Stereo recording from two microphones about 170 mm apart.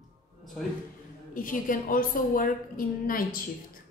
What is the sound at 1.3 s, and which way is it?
A woman's voice, 55° left (ahead or behind).